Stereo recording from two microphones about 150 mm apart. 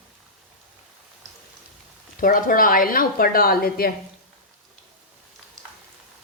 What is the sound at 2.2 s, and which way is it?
A woman's voice, 65° left (ahead or behind).